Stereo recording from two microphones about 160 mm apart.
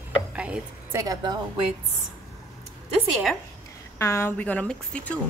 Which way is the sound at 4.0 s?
15° left (ahead or behind).